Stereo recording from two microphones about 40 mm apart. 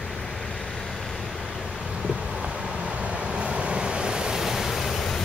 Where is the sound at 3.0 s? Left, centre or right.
Right.